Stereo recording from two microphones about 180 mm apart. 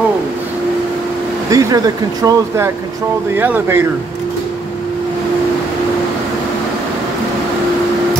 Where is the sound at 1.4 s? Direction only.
20° right (ahead or behind).